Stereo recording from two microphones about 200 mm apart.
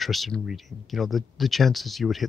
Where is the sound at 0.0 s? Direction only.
Centre (ahead or behind).